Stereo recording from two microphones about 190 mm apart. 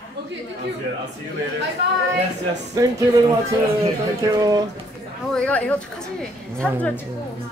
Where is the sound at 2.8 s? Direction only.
20° right (ahead or behind).